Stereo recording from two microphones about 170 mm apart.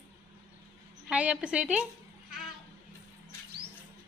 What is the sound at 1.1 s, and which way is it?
Speech, 5° right (ahead or behind).